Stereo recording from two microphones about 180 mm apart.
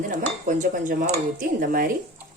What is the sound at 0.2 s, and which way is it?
Speech, 45° right (ahead or behind).